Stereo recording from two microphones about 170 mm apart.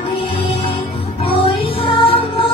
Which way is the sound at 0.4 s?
35° left (ahead or behind).